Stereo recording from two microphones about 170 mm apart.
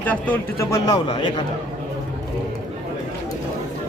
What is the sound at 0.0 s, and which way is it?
Speech, 10° left (ahead or behind).